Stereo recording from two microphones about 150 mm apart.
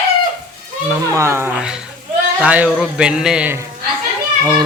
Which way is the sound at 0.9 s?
15° right (ahead or behind).